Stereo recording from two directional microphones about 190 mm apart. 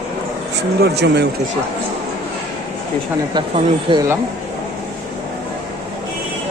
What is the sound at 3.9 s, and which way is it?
Speech, 15° right (ahead or behind).